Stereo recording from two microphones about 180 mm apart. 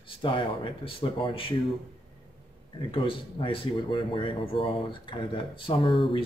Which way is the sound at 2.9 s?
30° left (ahead or behind).